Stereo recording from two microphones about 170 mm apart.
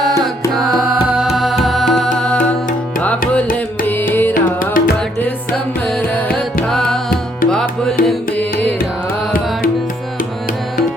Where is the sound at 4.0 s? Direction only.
10° left (ahead or behind).